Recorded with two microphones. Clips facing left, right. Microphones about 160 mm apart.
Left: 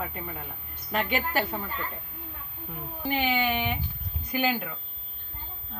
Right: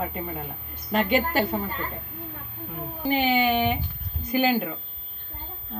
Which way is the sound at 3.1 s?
30° right (ahead or behind).